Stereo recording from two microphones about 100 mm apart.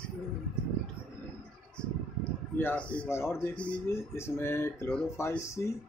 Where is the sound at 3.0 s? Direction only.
25° left (ahead or behind).